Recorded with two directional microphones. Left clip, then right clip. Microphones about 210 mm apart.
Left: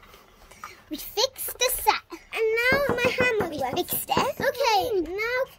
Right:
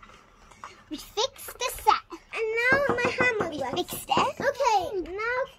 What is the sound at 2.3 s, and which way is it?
Baby cry, 40° left (ahead or behind).